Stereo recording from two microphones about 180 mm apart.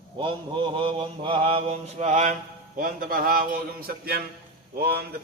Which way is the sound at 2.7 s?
50° right (ahead or behind).